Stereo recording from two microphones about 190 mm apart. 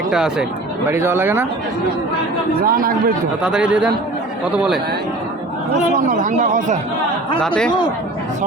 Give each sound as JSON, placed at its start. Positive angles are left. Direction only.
{"t": 0.1, "sound": "speech", "side_deg": -5}
{"t": 2.6, "sound": "speech", "side_deg": -50}
{"t": 3.4, "sound": "speech", "side_deg": -5}
{"t": 6.1, "sound": "speech", "side_deg": -45}
{"t": 7.4, "sound": "speech", "side_deg": 5}